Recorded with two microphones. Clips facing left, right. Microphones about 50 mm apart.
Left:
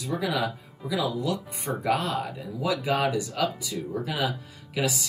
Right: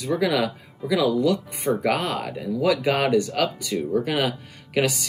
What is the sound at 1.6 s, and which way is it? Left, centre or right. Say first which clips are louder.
Speech: right 2 dB; right.